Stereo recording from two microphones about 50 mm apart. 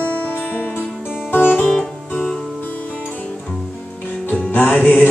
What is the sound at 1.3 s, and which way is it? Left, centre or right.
Music, left.